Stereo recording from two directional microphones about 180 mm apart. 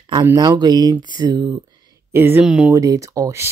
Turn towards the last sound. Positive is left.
turn(degrees=-15)  # may be behind; listen again after turning